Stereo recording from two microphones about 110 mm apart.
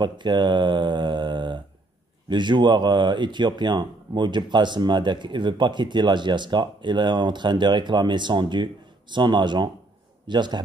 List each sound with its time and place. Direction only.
0.0 s speech: 45° right (ahead or behind)